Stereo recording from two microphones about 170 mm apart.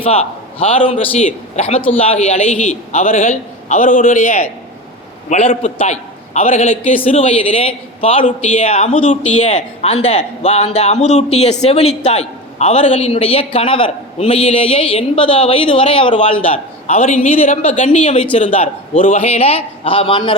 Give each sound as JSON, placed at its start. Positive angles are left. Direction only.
{"t": 0.0, "sound": "a woman's voice", "side_deg": 35}
{"t": 18.9, "sound": "a man's voice", "side_deg": 50}
{"t": 19.2, "sound": "a woman's voice", "side_deg": 35}